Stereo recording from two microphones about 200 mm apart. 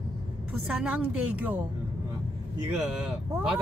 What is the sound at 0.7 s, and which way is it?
Speech, 5° right (ahead or behind).